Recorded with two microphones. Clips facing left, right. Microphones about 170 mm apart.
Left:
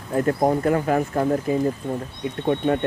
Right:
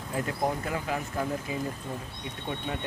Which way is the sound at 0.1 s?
50° left (ahead or behind).